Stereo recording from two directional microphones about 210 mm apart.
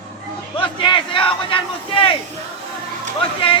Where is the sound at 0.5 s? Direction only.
25° left (ahead or behind).